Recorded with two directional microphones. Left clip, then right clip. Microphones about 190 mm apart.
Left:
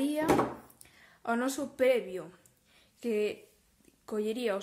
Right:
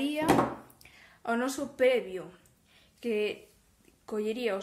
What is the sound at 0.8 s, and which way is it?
A woman's voice, 20° left (ahead or behind).